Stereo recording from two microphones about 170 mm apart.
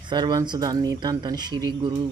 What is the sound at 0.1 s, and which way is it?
Speech, 25° right (ahead or behind).